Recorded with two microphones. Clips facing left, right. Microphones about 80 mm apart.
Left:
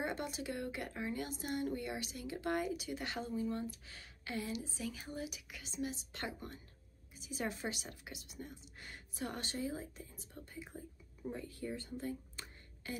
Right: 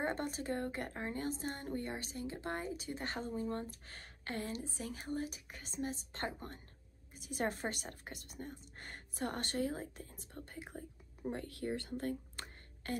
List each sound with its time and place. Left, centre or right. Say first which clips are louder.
0.0 s speech: right 2 dB; right
7.2 s speech: right 3 dB; right
12.0 s a sound: right 3 dB; right